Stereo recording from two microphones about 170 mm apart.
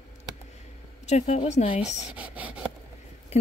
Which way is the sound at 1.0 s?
40° left (ahead or behind).